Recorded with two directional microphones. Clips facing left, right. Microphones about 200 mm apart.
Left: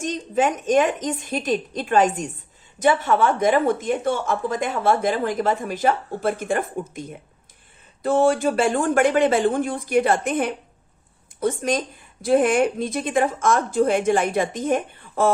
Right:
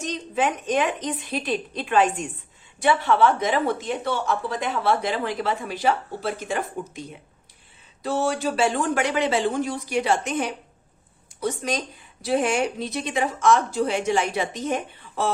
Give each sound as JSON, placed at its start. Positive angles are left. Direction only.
{"t": 0.0, "sound": "speech", "side_deg": 45}